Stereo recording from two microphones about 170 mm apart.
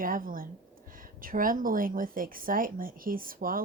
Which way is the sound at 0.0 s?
55° right (ahead or behind).